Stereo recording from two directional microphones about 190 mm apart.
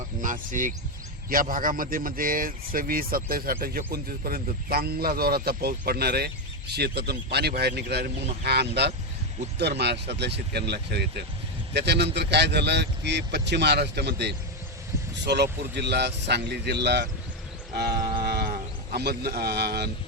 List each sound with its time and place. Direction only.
0.2 s a man's voice: 45° right (ahead or behind); by 17.1 s 60° right (ahead or behind)
18.2 s music: 55° right (ahead or behind)
18.9 s a man's voice: 55° right (ahead or behind)